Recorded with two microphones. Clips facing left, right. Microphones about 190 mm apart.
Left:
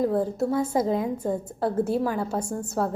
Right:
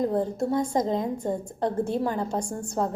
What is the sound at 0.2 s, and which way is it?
A woman's voice, 5° left (ahead or behind).